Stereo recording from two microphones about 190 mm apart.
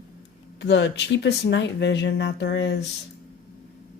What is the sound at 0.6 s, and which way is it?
Speech, 70° left (ahead or behind).